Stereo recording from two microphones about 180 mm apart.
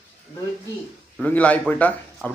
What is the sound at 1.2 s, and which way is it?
Speech, 10° left (ahead or behind).